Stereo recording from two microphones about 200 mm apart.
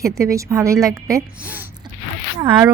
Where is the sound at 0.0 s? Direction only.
15° right (ahead or behind).